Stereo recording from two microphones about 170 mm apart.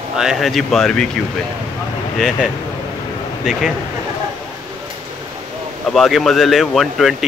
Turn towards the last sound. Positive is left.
turn(degrees=0)  # may be behind; listen again after turning